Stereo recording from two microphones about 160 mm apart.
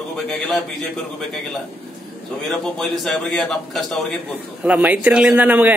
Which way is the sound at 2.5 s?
Centre (ahead or behind).